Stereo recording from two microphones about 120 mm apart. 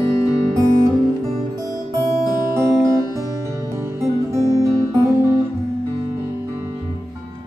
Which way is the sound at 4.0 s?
25° right (ahead or behind).